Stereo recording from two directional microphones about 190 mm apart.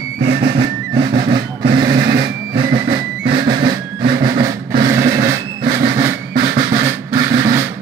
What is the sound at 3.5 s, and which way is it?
Drum, 25° right (ahead or behind).